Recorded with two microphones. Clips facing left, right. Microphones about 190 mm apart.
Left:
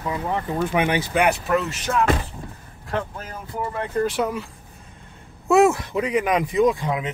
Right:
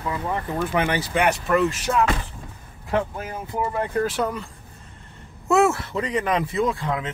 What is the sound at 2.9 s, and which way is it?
Speech, 15° right (ahead or behind).